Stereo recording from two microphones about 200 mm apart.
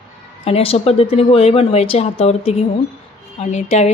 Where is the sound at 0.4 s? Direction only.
30° left (ahead or behind).